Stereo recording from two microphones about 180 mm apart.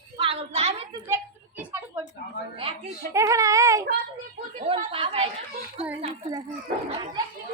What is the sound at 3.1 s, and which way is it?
Speech, 15° right (ahead or behind).